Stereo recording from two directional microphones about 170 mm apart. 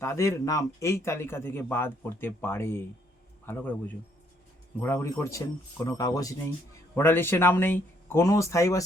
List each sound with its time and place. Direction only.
0.0 s a man's voice: 15° left (ahead or behind)